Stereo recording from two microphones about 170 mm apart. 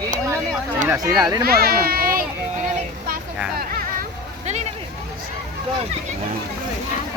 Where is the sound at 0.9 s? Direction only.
20° right (ahead or behind).